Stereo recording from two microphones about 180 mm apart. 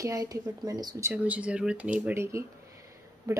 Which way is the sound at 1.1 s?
10° right (ahead or behind).